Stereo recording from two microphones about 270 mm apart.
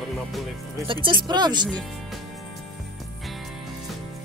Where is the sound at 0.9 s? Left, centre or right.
Centre.